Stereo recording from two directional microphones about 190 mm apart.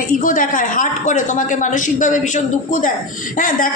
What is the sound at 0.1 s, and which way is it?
A woman's voice, 45° left (ahead or behind).